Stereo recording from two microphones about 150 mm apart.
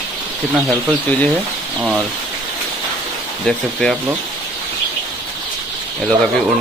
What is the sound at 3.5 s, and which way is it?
Speech, 5° left (ahead or behind).